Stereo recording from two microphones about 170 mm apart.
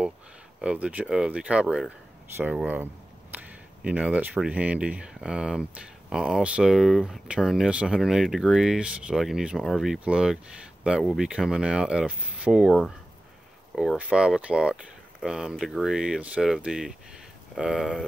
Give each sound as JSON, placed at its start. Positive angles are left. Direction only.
{"t": 0.6, "sound": "speech", "side_deg": -5}